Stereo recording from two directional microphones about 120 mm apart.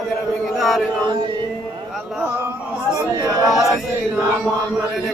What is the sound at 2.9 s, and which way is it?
Chatter, 30° right (ahead or behind).